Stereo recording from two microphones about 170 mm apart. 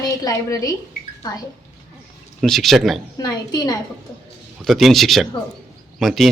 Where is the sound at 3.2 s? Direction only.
20° left (ahead or behind).